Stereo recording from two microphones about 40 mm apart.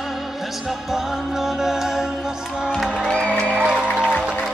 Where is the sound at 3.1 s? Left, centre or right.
Left.